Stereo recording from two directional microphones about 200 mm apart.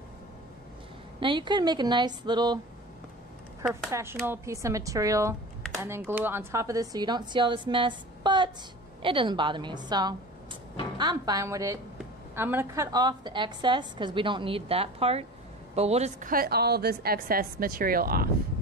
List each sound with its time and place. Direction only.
1.2 s a woman's voice: 25° right (ahead or behind)
3.9 s a woman's voice: 15° right (ahead or behind); by 18.3 s 50° right (ahead or behind)